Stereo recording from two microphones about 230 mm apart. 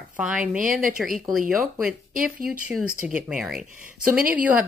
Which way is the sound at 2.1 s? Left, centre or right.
Right.